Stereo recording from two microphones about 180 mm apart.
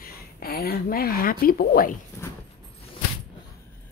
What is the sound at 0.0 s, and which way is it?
Speech, 55° left (ahead or behind).